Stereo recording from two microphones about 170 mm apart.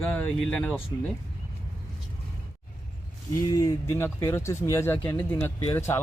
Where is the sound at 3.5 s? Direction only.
20° left (ahead or behind).